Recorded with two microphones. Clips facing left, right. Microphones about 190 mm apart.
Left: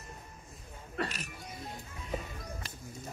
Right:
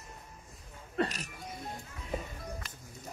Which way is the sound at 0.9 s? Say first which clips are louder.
Right 4 dB; 35° right (ahead or behind).